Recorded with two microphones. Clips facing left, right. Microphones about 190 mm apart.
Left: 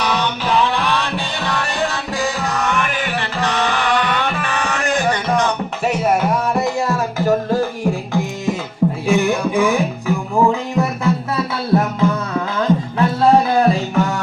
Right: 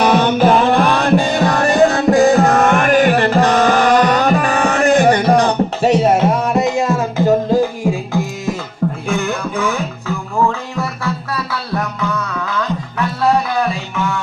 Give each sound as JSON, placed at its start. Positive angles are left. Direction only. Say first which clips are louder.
{"t": 0.0, "sound": "music", "louder": "right 9 dB", "side_deg": -50}
{"t": 9.0, "sound": "music", "louder": "left 3 dB", "side_deg": 10}